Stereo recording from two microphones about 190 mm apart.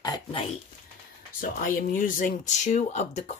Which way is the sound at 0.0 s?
25° left (ahead or behind).